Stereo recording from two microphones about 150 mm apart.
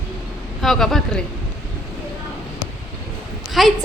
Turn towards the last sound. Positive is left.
turn(degrees=0)  # may be behind; listen again after turning